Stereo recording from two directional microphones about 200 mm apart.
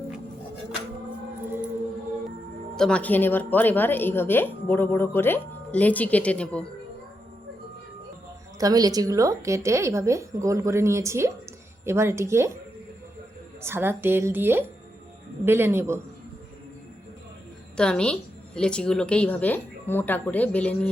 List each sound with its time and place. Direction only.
2.7 s speech: 5° left (ahead or behind)
8.5 s a woman's voice: 20° right (ahead or behind)
13.6 s a woman's voice: 10° right (ahead or behind)
17.7 s a woman's voice: 5° left (ahead or behind)